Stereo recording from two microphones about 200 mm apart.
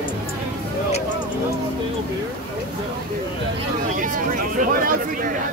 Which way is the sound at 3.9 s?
40° right (ahead or behind).